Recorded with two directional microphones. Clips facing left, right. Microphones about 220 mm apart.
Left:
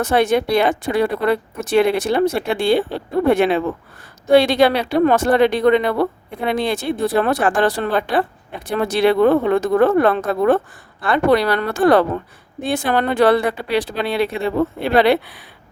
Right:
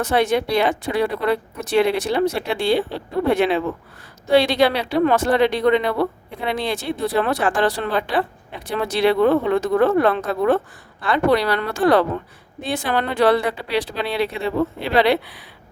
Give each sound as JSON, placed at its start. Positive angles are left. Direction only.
{"t": 0.0, "sound": "speech", "side_deg": 50}